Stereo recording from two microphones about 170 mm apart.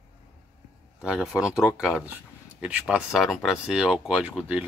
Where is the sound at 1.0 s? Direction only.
5° right (ahead or behind).